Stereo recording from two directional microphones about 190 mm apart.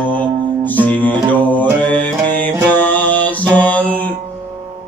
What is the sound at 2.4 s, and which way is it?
Mantra, 10° left (ahead or behind).